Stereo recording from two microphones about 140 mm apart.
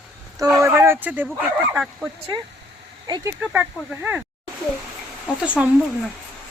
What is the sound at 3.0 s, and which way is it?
Speech, 30° right (ahead or behind).